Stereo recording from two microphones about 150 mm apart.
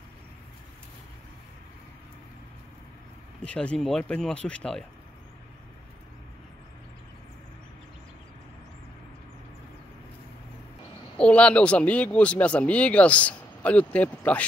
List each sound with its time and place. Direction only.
3.4 s speech: 5° left (ahead or behind)
11.1 s speech: 5° left (ahead or behind)